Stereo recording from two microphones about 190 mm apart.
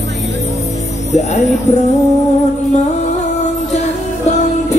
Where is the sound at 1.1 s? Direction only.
35° left (ahead or behind).